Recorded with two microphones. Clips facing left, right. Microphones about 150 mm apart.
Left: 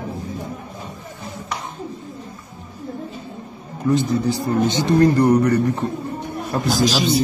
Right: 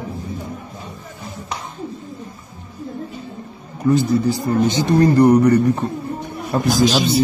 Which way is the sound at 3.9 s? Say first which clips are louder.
Right 3 dB; 10° right (ahead or behind).